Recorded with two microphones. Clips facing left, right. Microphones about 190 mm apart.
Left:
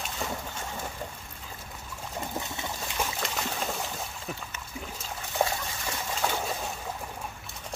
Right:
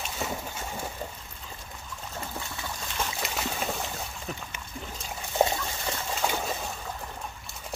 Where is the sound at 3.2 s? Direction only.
5° right (ahead or behind).